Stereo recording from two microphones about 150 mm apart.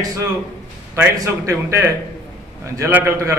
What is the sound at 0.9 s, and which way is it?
A man's voice, 20° right (ahead or behind).